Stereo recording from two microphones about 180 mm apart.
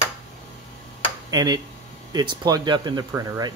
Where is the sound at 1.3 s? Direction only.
20° right (ahead or behind).